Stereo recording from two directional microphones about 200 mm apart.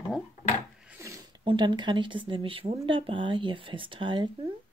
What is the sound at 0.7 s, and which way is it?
Filing, 5° right (ahead or behind).